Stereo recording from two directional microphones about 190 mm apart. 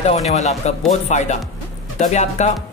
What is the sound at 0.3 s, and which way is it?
Speech, 35° left (ahead or behind).